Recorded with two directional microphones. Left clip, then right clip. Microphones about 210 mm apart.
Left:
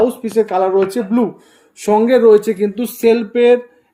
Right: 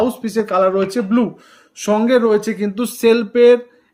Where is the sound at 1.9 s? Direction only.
35° right (ahead or behind).